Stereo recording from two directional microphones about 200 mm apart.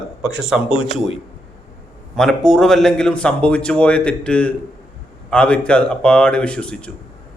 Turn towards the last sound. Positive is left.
turn(degrees=5)  # may be behind; listen again after turning